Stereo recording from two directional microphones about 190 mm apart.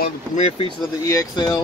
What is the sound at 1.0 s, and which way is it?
Speech, 20° left (ahead or behind).